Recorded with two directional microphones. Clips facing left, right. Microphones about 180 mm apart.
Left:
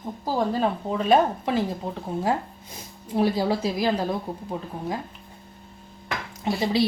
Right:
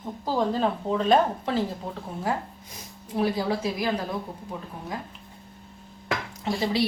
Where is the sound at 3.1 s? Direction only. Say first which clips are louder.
Left 3 dB; 30° left (ahead or behind).